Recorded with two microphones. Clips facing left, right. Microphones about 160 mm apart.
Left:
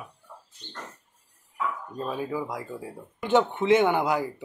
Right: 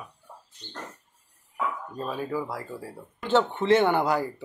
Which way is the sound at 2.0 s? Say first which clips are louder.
Even; 15° left (ahead or behind).